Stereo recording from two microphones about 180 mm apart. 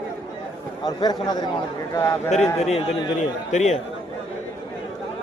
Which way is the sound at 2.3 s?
35° left (ahead or behind).